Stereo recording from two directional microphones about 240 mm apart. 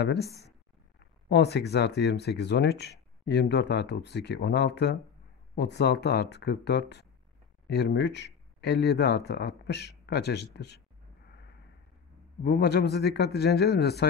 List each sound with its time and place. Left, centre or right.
0.0 s speech: left
12.4 s speech: left